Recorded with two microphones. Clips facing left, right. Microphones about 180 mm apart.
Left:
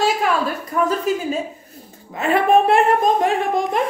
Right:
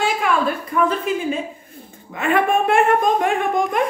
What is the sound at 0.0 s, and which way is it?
A woman's voice, 40° left (ahead or behind).